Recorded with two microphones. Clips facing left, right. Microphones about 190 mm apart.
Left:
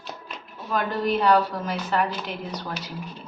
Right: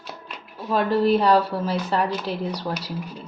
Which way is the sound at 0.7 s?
30° right (ahead or behind).